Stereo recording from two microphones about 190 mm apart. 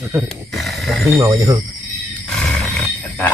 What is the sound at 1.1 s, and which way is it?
Speech, 20° right (ahead or behind).